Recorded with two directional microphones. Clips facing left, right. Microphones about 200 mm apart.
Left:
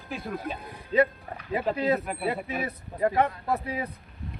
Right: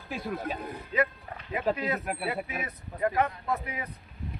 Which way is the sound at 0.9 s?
30° left (ahead or behind).